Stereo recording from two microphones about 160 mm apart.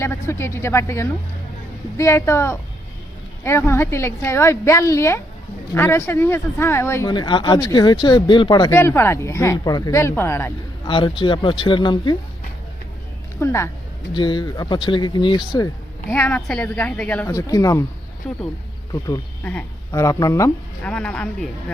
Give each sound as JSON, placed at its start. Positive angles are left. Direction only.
{"t": 0.0, "sound": "speech", "side_deg": 15}
{"t": 7.1, "sound": "speech", "side_deg": 30}
{"t": 8.7, "sound": "speech", "side_deg": 15}
{"t": 10.8, "sound": "speech", "side_deg": 30}
{"t": 13.4, "sound": "speech", "side_deg": 15}
{"t": 14.1, "sound": "speech", "side_deg": 30}
{"t": 16.0, "sound": "speech", "side_deg": 10}
{"t": 17.3, "sound": "speech", "side_deg": 20}
{"t": 18.3, "sound": "speech", "side_deg": 5}
{"t": 19.4, "sound": "speech", "side_deg": 5}
{"t": 19.9, "sound": "speech", "side_deg": 20}
{"t": 20.8, "sound": "speech", "side_deg": 5}